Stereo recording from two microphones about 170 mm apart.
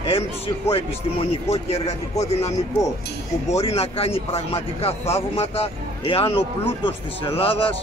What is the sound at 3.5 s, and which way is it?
A man's voice, 35° left (ahead or behind).